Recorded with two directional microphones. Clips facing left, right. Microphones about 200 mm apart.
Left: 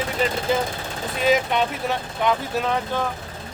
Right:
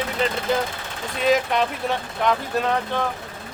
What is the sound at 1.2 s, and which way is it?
Speech, centre (ahead or behind).